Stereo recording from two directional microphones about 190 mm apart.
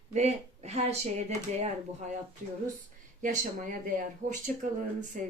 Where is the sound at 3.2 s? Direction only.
45° right (ahead or behind).